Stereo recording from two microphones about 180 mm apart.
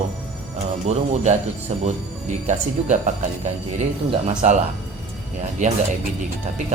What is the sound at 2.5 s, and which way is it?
Speech, 40° right (ahead or behind).